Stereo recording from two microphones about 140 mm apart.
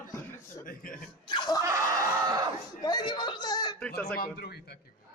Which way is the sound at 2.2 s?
30° right (ahead or behind).